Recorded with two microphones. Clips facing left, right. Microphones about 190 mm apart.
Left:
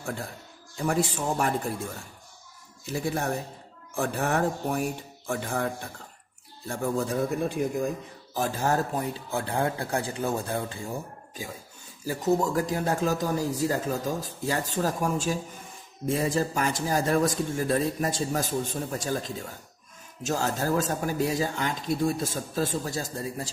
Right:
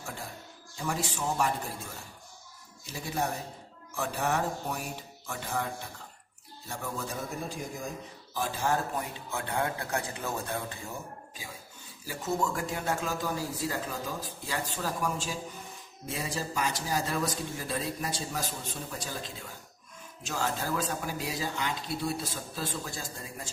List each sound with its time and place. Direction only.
0.8 s speech: 55° left (ahead or behind)
2.8 s speech: 55° left (ahead or behind)
6.7 s speech: 55° left (ahead or behind)
8.3 s speech: 45° left (ahead or behind)
12.0 s speech: 40° left (ahead or behind)